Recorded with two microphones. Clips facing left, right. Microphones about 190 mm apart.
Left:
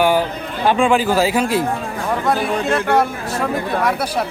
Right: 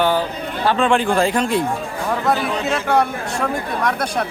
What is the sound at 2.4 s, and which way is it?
Speech, 55° left (ahead or behind).